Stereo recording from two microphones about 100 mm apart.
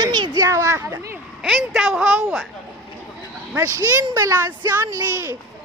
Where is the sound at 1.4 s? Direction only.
Centre (ahead or behind).